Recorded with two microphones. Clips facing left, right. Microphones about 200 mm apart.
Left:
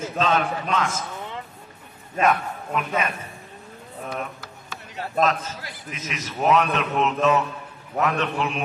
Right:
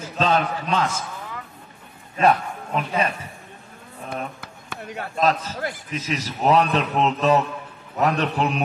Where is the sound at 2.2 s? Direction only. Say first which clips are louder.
Right 3 dB; 35° right (ahead or behind).